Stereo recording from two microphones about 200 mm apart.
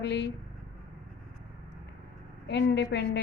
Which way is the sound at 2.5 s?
60° left (ahead or behind).